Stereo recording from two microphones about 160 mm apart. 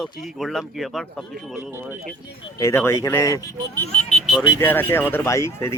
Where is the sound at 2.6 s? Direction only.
15° left (ahead or behind).